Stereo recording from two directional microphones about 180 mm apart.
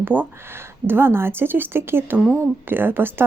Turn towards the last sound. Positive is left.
turn(degrees=-10)  # may be behind; listen again after turning